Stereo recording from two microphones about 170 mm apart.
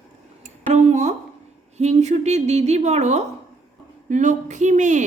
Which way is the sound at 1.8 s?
40° right (ahead or behind).